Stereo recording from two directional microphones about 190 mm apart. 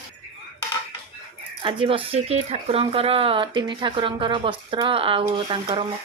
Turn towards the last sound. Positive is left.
turn(degrees=-25)  # may be behind; listen again after turning